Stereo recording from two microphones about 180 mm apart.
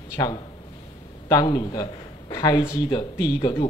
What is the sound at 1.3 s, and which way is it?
Speech, 25° left (ahead or behind).